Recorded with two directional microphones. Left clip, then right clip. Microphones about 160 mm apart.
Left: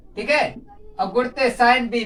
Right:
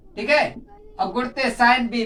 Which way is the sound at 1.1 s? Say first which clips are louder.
Left 4 dB; 20° left (ahead or behind).